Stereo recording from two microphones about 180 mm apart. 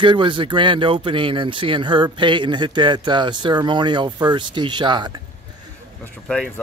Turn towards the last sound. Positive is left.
turn(degrees=5)  # may be behind; listen again after turning